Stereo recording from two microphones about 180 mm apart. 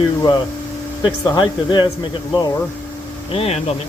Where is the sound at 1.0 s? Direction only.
25° left (ahead or behind).